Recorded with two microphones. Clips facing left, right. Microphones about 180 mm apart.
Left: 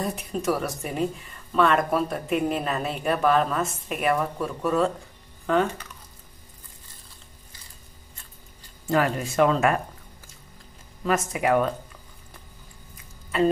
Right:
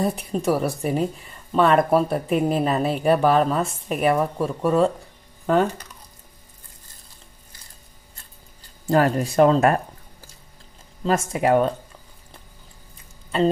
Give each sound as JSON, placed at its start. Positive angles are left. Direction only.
{"t": 0.0, "sound": "speech", "side_deg": -35}
{"t": 8.8, "sound": "speech", "side_deg": -35}
{"t": 11.1, "sound": "speech", "side_deg": -30}